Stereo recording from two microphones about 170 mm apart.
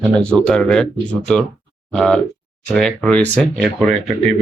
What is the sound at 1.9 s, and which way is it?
Speech, 5° left (ahead or behind).